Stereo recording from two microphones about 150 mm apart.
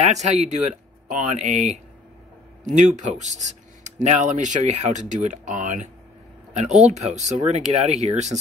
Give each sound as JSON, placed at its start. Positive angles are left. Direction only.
{"t": 0.0, "sound": "speech", "side_deg": -50}